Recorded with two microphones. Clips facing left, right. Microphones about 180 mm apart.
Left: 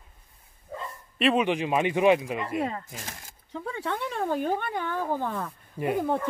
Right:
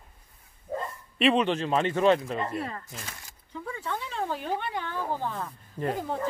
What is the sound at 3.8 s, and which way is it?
Speech, 65° left (ahead or behind).